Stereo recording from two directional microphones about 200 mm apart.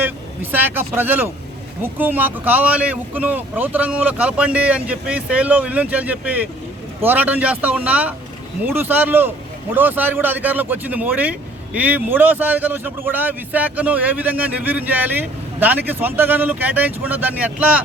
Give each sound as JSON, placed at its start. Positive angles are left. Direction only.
{"t": 0.5, "sound": "speech", "side_deg": -10}